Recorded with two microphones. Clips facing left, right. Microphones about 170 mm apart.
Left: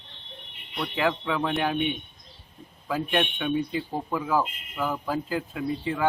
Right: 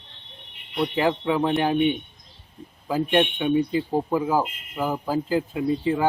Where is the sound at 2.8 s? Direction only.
30° right (ahead or behind).